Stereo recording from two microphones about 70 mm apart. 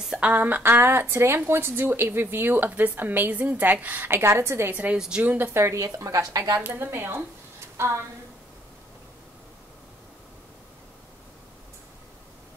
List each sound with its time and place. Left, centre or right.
0.2 s a woman's voice: right
4.9 s speech: centre
5.2 s speech: right
5.6 s a woman's voice: right
6.6 s a woman's voice: right
7.7 s a sound: right